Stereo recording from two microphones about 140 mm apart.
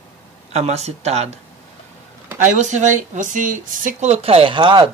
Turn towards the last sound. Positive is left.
turn(degrees=-35)  # may be behind; listen again after turning